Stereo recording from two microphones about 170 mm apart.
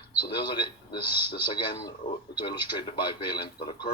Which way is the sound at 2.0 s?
50° left (ahead or behind).